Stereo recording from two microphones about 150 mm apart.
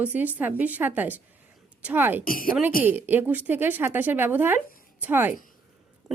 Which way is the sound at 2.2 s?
70° left (ahead or behind).